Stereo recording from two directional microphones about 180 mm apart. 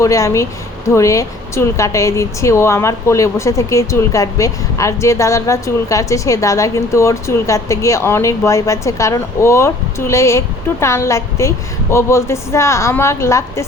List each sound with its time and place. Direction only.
0.0 s speech: 15° left (ahead or behind)